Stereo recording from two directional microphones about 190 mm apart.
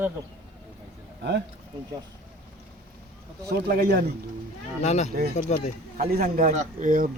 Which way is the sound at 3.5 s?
55° right (ahead or behind).